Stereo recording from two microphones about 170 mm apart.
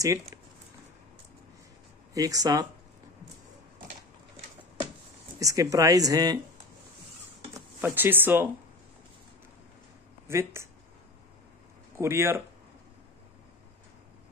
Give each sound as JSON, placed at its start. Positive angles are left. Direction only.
{"t": 2.1, "sound": "speech", "side_deg": -20}
{"t": 5.4, "sound": "speech", "side_deg": -20}
{"t": 7.8, "sound": "speech", "side_deg": -10}
{"t": 10.2, "sound": "speech", "side_deg": -15}
{"t": 12.0, "sound": "speech", "side_deg": -15}